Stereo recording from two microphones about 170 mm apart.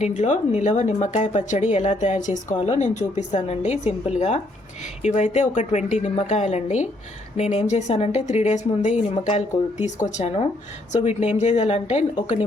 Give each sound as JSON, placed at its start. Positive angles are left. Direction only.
{"t": 0.0, "sound": "speech", "side_deg": 45}